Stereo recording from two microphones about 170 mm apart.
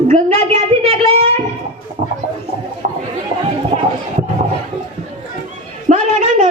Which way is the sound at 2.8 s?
50° right (ahead or behind).